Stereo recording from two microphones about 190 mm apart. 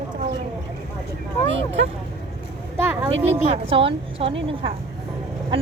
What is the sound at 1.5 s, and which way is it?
Speech, 80° right.